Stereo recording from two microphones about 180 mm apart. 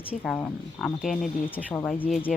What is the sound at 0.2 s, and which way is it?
Speech, 10° left (ahead or behind).